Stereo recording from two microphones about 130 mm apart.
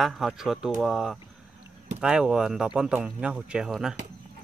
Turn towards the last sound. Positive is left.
turn(degrees=-5)  # may be behind; listen again after turning